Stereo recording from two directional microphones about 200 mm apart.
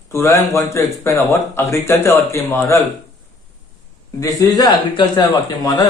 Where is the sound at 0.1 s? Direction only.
15° left (ahead or behind).